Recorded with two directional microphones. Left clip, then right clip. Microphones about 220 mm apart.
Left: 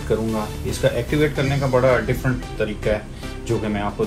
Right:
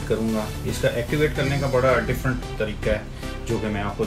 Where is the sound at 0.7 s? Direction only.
15° left (ahead or behind).